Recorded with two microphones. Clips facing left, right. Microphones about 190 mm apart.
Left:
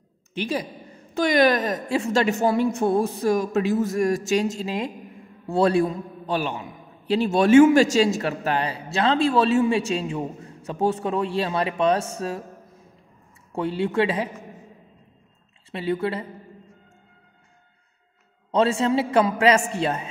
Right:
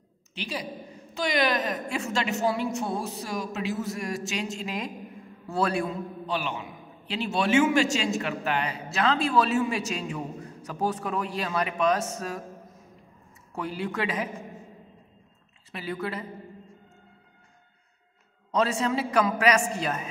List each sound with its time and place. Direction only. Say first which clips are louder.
0.3 s a woman's voice: left 7 dB; 50° left (ahead or behind)
1.9 s a woman's voice: left 7 dB; 30° left (ahead or behind)
2.2 s a woman's voice: left 6 dB; 50° left (ahead or behind)
4.6 s a man's voice: left 5 dB; 30° left (ahead or behind)
6.2 s a man's voice: left 6 dB; 45° left (ahead or behind); by 12.4 s 30° left (ahead or behind)
13.5 s a man's voice: left 7 dB; 25° left (ahead or behind)
15.7 s a man's voice: left 7 dB; 25° left (ahead or behind)
18.5 s a man's voice: left 5 dB; 30° left (ahead or behind)